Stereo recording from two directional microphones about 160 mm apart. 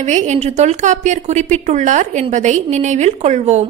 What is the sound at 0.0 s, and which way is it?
A woman's voice, 45° right (ahead or behind).